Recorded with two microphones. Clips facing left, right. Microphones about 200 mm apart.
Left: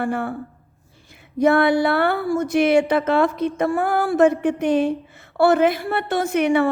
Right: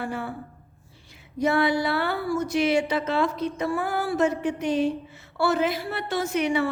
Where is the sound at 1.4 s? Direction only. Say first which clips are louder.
Left 6 dB; 55° left (ahead or behind).